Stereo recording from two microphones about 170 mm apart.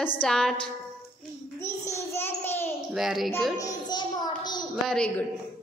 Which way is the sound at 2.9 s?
5° right (ahead or behind).